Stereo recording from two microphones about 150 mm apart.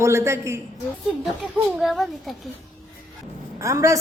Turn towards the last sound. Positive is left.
turn(degrees=-20)  # may be behind; listen again after turning